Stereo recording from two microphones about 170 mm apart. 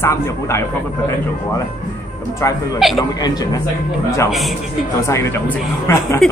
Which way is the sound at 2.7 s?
Centre (ahead or behind).